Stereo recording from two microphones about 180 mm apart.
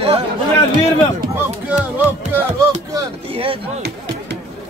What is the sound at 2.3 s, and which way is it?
Music, 15° right (ahead or behind).